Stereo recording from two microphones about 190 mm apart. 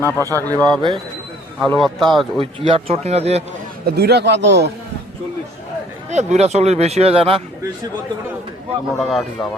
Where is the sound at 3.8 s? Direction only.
55° right (ahead or behind).